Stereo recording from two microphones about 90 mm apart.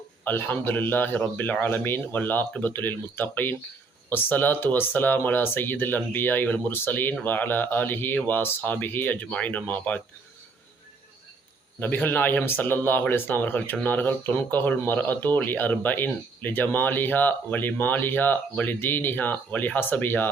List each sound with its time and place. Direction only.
0.3 s speech: 20° left (ahead or behind)
11.8 s speech: 20° left (ahead or behind)